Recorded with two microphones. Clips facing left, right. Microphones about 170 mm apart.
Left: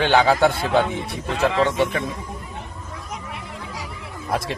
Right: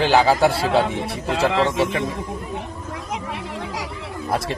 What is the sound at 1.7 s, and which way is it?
Speech, centre (ahead or behind).